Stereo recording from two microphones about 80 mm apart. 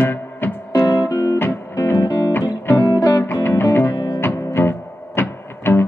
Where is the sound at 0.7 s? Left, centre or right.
Left.